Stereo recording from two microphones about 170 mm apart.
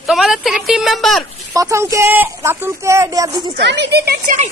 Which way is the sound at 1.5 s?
20° right (ahead or behind).